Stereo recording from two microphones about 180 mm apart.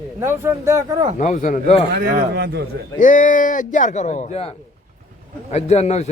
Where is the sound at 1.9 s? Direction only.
65° right (ahead or behind).